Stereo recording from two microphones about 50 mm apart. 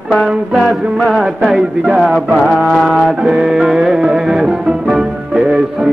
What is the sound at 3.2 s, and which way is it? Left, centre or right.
Music, centre.